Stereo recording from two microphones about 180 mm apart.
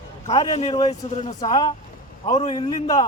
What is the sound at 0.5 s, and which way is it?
Speech, 35° left (ahead or behind).